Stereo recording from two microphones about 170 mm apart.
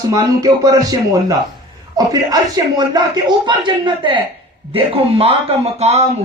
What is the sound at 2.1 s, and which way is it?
Speech, 25° right (ahead or behind).